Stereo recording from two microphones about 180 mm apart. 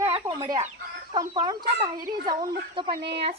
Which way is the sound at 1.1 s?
25° right (ahead or behind).